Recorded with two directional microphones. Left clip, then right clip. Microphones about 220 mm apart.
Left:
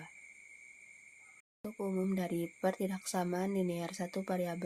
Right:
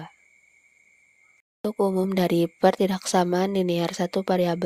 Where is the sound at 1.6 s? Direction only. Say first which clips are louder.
Right 14 dB; 40° right (ahead or behind).